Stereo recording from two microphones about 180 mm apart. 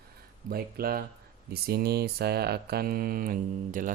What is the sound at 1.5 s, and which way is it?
Mantra, 60° right (ahead or behind).